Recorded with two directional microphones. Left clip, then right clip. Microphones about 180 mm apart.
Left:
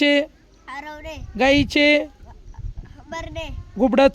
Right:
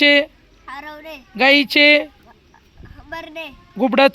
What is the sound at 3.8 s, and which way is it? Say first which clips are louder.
Speech: right 2 dB; 15° left (ahead or behind).